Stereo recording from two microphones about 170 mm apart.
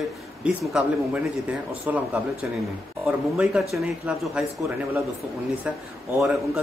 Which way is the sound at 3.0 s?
5° right (ahead or behind).